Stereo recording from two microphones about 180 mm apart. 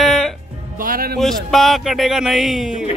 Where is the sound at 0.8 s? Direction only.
55° right (ahead or behind).